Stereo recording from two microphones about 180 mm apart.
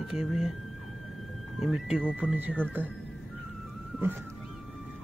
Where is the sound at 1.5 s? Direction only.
Centre (ahead or behind).